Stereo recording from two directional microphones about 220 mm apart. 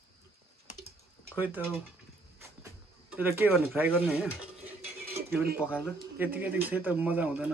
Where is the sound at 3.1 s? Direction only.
10° right (ahead or behind).